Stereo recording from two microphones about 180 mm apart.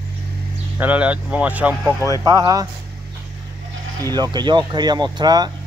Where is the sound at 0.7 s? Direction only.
10° right (ahead or behind).